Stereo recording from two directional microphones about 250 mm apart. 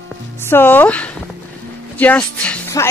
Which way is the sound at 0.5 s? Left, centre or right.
Centre.